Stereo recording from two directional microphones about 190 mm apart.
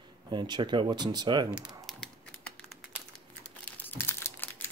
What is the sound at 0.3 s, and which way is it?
Speech, 25° right (ahead or behind).